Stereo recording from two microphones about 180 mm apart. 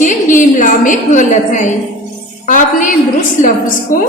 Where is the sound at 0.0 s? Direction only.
45° left (ahead or behind).